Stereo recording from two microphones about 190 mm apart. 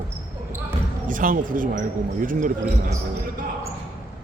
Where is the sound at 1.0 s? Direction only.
45° right (ahead or behind).